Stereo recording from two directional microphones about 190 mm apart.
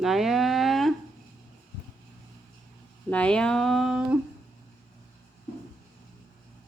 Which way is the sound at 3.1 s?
5° left (ahead or behind).